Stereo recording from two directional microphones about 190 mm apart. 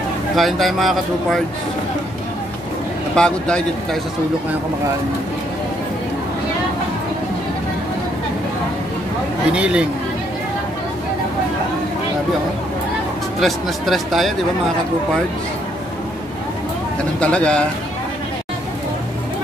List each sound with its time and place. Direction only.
0.4 s speech: centre (ahead or behind)
3.2 s speech: 5° left (ahead or behind)
9.5 s speech: 5° right (ahead or behind)
13.4 s speech: centre (ahead or behind)
17.2 s speech: 5° left (ahead or behind)